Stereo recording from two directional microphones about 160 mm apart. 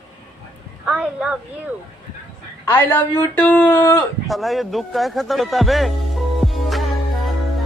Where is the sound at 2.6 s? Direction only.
15° left (ahead or behind).